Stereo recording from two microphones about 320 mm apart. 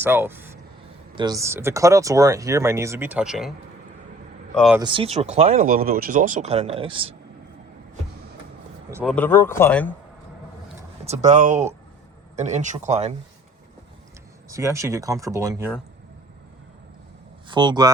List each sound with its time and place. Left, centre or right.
0.0 s speech: centre
4.5 s speech: centre
4.8 s speech: centre
8.9 s speech: centre
9.1 s speech: centre
11.0 s speech: right
14.5 s speech: centre
17.5 s speech: centre